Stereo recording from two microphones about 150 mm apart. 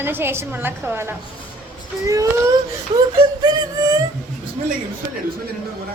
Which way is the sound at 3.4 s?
25° right (ahead or behind).